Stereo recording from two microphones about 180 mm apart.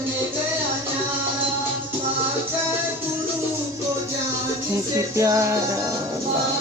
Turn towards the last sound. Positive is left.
turn(degrees=-15)  # may be behind; listen again after turning